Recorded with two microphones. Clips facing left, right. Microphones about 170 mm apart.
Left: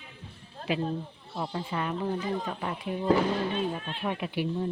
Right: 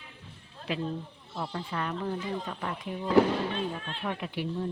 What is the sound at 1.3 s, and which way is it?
Speech, 15° left (ahead or behind).